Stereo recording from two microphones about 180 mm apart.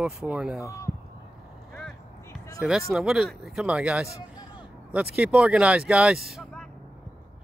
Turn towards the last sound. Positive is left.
turn(degrees=0)  # may be behind; listen again after turning